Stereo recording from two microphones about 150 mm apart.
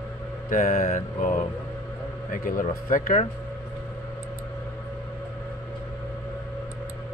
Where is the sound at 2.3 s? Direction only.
65° left (ahead or behind).